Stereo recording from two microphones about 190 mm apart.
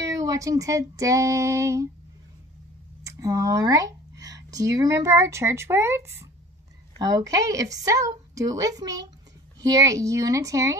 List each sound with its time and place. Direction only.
0.0 s a woman's voice: 15° right (ahead or behind)
3.0 s a woman's voice: 15° right (ahead or behind)